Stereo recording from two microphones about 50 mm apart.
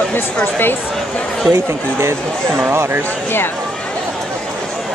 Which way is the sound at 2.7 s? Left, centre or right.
Right.